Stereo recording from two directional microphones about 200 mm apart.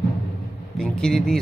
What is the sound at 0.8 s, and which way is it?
Speech, 5° left (ahead or behind).